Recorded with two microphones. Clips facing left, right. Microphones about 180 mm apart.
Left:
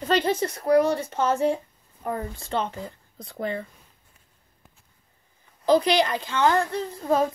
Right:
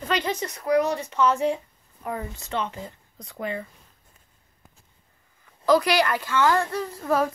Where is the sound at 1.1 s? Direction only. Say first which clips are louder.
Right 3 dB; 50° left (ahead or behind).